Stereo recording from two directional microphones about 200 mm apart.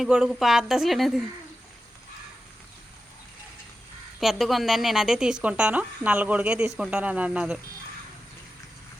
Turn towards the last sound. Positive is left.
turn(degrees=-5)  # may be behind; listen again after turning